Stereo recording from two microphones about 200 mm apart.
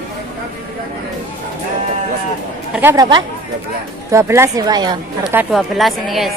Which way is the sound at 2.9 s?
20° right (ahead or behind).